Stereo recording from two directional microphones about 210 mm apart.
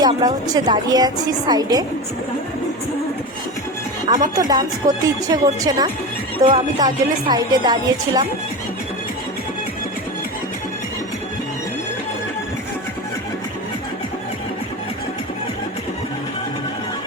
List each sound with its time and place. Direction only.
0.0 s a woman's voice: 20° right (ahead or behind)
4.4 s a woman's voice: 20° right (ahead or behind)